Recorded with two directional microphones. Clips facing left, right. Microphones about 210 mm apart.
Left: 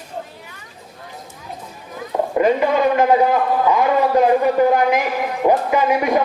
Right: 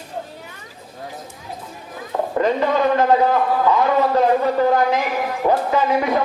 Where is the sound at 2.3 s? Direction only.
10° left (ahead or behind).